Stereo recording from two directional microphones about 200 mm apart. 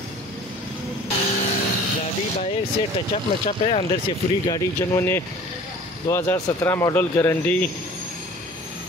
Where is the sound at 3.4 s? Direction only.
30° left (ahead or behind).